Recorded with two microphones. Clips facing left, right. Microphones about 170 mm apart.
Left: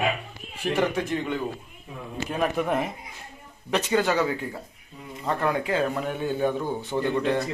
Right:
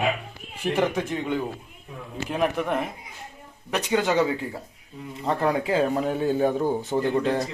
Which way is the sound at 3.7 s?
15° right (ahead or behind).